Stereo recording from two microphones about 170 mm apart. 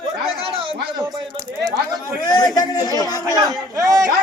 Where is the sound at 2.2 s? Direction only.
25° left (ahead or behind).